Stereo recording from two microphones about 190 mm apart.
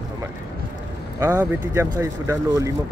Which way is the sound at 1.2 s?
15° right (ahead or behind).